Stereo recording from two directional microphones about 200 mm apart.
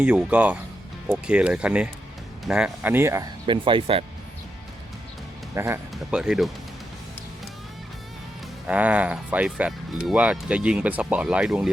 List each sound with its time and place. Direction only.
0.0 s speech: 5° right (ahead or behind)
3.4 s speech: 25° right (ahead or behind)
5.5 s speech: 15° right (ahead or behind)
5.9 s speech: 5° right (ahead or behind)
8.6 s speech: 5° right (ahead or behind)